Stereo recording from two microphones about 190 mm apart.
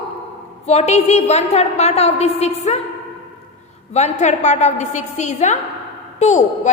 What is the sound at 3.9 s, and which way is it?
A woman's voice, 35° left (ahead or behind).